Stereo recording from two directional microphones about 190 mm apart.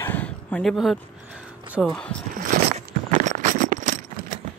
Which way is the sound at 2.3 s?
45° right (ahead or behind).